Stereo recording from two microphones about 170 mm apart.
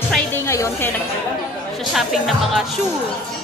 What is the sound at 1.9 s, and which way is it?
Speech, centre (ahead or behind).